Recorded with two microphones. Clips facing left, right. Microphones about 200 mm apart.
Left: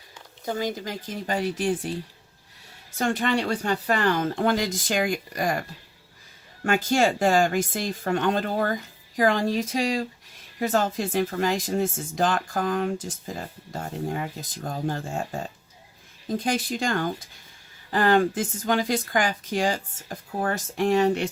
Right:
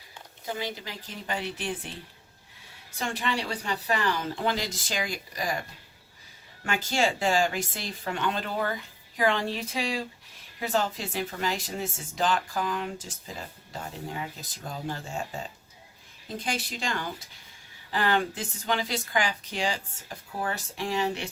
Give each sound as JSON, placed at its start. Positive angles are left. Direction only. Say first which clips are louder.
{"t": 0.4, "sound": "speech", "louder": "left 6 dB", "side_deg": 45}
{"t": 3.0, "sound": "speech", "louder": "left 7 dB", "side_deg": 50}
{"t": 6.7, "sound": "speech", "louder": "left 6 dB", "side_deg": 50}